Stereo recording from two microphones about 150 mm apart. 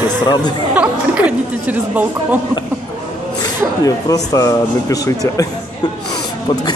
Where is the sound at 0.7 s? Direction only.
10° right (ahead or behind).